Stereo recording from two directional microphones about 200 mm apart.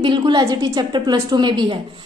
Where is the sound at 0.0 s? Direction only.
20° right (ahead or behind).